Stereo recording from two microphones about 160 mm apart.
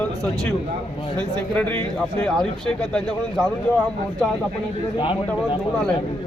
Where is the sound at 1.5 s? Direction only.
10° left (ahead or behind).